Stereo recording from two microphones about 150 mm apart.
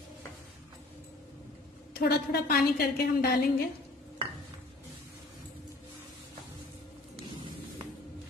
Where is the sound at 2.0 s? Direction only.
90° left.